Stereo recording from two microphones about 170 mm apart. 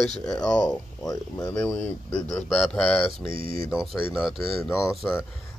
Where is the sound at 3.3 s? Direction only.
60° right (ahead or behind).